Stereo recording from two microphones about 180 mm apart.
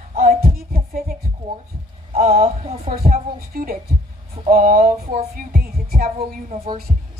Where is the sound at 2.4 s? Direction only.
35° right (ahead or behind).